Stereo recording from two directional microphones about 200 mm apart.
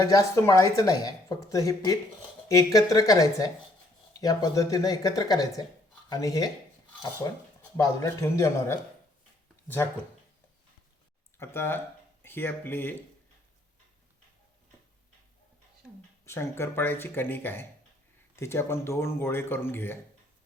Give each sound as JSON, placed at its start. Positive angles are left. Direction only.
{"t": 0.0, "sound": "speech", "side_deg": 15}
{"t": 7.9, "sound": "speech", "side_deg": 15}
{"t": 11.3, "sound": "speech", "side_deg": 10}
{"t": 16.2, "sound": "speech", "side_deg": 15}